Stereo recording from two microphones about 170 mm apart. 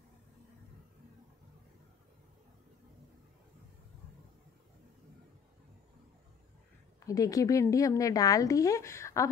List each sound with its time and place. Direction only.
7.1 s a woman's voice: 20° left (ahead or behind)